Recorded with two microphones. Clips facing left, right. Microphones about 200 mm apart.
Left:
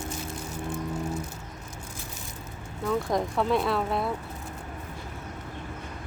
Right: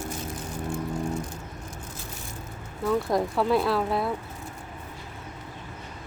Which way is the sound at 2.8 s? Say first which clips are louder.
Right 2 dB; 5° right (ahead or behind).